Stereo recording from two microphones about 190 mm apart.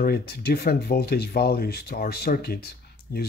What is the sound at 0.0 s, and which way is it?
Speech, 55° left (ahead or behind).